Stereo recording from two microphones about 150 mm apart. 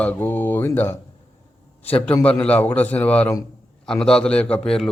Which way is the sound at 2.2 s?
10° left (ahead or behind).